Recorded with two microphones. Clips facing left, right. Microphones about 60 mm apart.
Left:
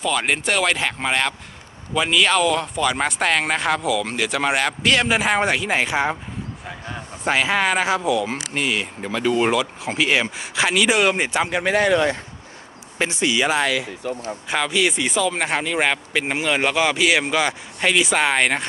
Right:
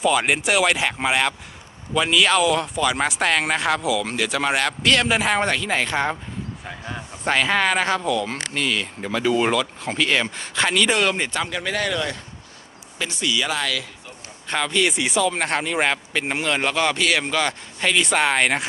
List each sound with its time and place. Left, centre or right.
0.0 s speech: centre
9.0 s speech: centre; by 13.8 s left
14.0 s speech: left
14.5 s speech: centre